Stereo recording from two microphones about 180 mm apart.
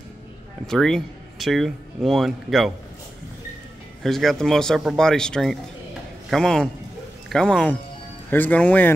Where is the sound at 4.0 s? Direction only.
Centre (ahead or behind).